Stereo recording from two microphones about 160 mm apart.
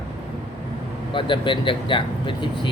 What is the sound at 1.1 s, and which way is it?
Speech, 30° left (ahead or behind).